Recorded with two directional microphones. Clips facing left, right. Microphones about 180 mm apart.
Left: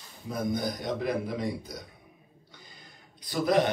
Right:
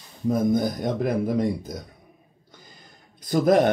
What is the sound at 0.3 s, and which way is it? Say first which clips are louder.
Speech: right 9 dB; 45° right (ahead or behind).